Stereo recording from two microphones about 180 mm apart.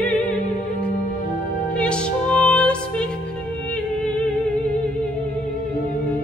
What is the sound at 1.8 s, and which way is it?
Music, 5° left (ahead or behind).